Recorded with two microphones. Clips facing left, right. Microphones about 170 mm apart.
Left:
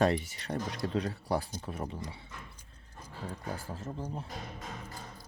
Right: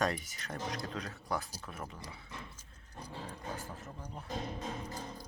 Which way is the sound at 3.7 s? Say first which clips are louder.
Left 7 dB; 30° left (ahead or behind).